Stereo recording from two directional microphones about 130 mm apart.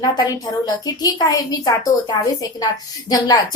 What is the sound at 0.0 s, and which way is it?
A woman's voice, 30° left (ahead or behind).